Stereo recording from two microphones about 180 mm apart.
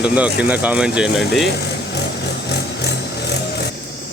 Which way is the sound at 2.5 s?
70° left (ahead or behind).